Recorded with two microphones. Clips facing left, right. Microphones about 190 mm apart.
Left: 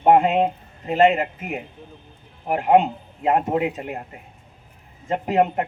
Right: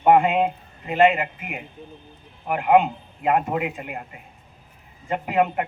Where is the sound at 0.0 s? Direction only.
40° left (ahead or behind).